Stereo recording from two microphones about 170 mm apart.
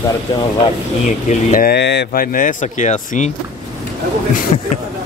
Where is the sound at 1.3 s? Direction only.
60° left (ahead or behind).